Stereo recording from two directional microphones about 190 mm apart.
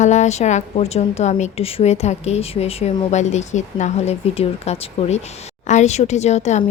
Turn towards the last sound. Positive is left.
turn(degrees=35)  # may be behind; listen again after turning